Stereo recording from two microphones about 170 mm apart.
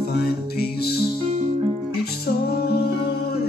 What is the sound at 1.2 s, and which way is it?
Music, 45° right (ahead or behind).